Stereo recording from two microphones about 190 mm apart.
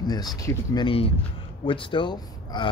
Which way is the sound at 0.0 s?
20° left (ahead or behind).